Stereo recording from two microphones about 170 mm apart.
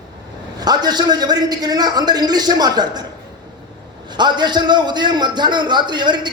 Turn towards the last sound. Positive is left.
turn(degrees=-25)  # may be behind; listen again after turning